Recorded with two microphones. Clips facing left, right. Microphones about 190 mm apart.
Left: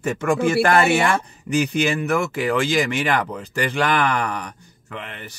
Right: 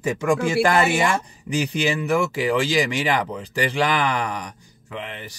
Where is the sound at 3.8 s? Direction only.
55° left (ahead or behind).